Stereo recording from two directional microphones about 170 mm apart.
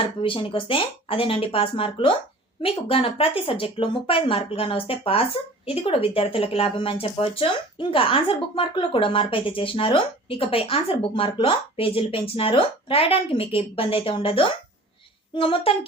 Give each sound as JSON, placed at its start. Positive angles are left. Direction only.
{"t": 0.2, "sound": "speech", "side_deg": 30}